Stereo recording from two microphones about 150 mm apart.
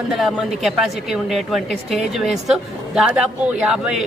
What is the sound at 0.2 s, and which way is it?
Speech, 5° right (ahead or behind).